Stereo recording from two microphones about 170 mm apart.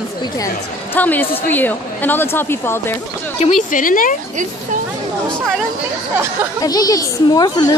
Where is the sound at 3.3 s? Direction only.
45° left (ahead or behind).